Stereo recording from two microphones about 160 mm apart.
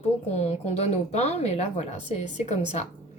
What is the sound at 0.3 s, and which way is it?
A woman's voice, 40° left (ahead or behind).